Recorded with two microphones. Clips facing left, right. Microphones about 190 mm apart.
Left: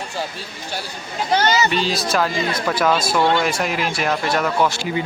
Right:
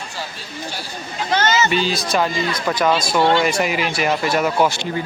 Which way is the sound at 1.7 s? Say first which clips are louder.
Right 1 dB; centre (ahead or behind).